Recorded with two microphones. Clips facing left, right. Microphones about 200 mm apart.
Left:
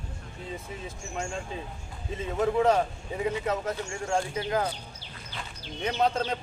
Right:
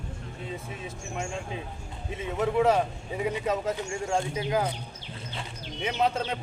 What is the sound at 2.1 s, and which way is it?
A man's voice, 5° right (ahead or behind).